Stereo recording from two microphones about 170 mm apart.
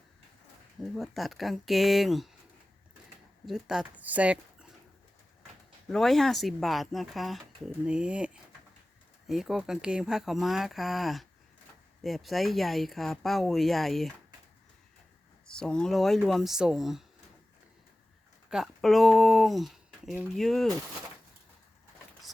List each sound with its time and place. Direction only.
0.9 s speech: centre (ahead or behind)
3.4 s speech: 5° right (ahead or behind)
5.9 s speech: centre (ahead or behind)
15.4 s speech: 5° left (ahead or behind)
18.5 s speech: centre (ahead or behind)